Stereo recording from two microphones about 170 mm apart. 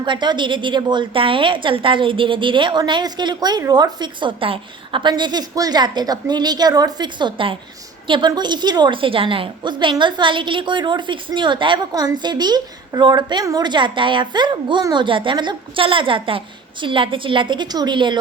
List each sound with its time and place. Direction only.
0.0 s a woman's voice: 25° right (ahead or behind)